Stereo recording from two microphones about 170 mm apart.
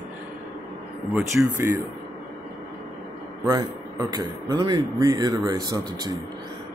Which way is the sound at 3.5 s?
25° right (ahead or behind).